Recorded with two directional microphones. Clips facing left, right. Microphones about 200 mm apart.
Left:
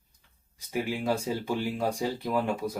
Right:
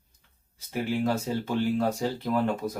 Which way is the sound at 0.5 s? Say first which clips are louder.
Right 2 dB; 15° left (ahead or behind).